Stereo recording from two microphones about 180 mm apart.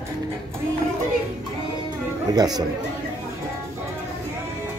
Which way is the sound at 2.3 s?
20° right (ahead or behind).